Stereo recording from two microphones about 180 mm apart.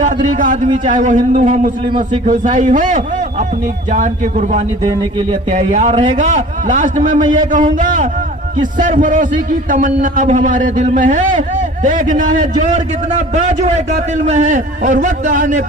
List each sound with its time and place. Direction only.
0.0 s a man's voice: 45° right (ahead or behind)